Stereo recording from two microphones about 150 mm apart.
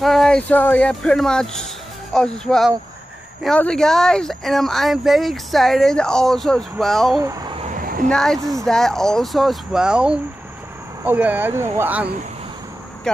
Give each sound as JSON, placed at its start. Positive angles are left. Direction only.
{"t": 0.0, "sound": "speech", "side_deg": 0}
{"t": 7.2, "sound": "speech", "side_deg": -25}
{"t": 7.7, "sound": "a sound", "side_deg": -65}
{"t": 8.1, "sound": "speech", "side_deg": 5}